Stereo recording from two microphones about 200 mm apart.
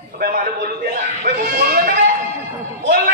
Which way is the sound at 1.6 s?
45° right (ahead or behind).